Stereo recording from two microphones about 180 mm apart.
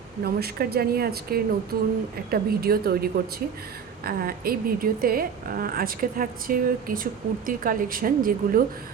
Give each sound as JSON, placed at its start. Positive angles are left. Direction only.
{"t": 0.3, "sound": "a woman's voice", "side_deg": -60}